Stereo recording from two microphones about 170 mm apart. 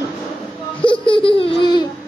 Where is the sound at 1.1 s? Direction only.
30° left (ahead or behind).